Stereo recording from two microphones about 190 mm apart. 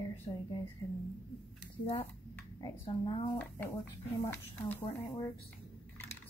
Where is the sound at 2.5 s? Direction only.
25° left (ahead or behind).